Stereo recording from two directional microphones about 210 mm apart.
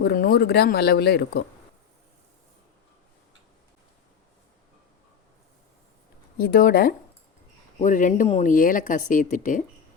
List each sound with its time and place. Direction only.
0.0 s speech: 45° left (ahead or behind)
6.3 s speech: 45° left (ahead or behind)